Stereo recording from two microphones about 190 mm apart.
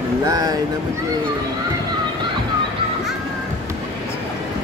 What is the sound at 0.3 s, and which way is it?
Speech, 20° right (ahead or behind).